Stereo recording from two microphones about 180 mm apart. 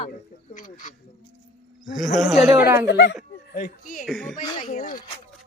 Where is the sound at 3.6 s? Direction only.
45° left (ahead or behind).